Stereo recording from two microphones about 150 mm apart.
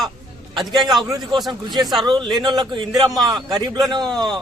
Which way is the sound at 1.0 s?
30° right (ahead or behind).